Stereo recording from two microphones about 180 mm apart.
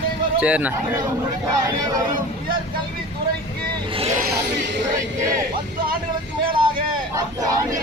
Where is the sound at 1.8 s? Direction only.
20° right (ahead or behind).